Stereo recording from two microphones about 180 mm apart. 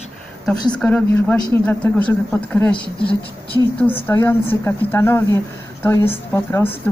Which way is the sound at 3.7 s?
10° left (ahead or behind).